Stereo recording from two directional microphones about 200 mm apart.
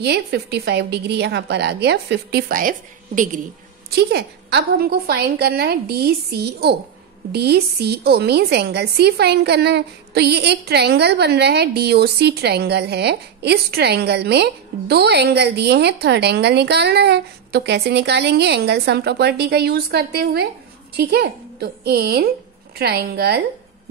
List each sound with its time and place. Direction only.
0.0 s a woman's voice: 55° right (ahead or behind)
3.9 s a woman's voice: 55° right (ahead or behind)